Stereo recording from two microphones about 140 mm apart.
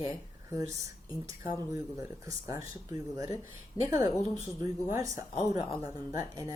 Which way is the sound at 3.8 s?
30° left (ahead or behind).